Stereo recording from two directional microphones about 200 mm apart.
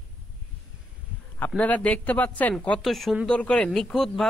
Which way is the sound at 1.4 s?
10° left (ahead or behind).